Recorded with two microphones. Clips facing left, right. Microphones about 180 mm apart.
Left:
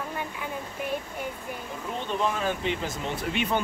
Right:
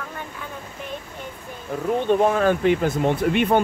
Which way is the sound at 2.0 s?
55° right (ahead or behind).